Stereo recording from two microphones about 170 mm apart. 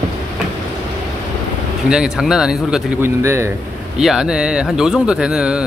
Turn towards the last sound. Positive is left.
turn(degrees=-5)  # may be behind; listen again after turning